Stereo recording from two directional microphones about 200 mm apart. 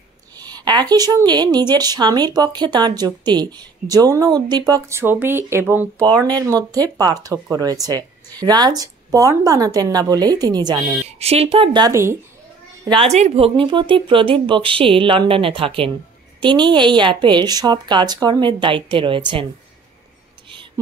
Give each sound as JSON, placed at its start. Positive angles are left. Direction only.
{"t": 0.4, "sound": "speech", "side_deg": -20}
{"t": 12.8, "sound": "speech", "side_deg": -25}